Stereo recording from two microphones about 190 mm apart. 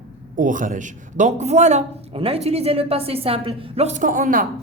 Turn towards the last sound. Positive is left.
turn(degrees=-45)  # may be behind; listen again after turning